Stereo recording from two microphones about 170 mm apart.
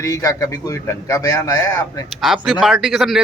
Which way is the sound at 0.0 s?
20° left (ahead or behind).